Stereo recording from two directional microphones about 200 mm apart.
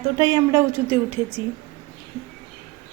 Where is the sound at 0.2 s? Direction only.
20° right (ahead or behind).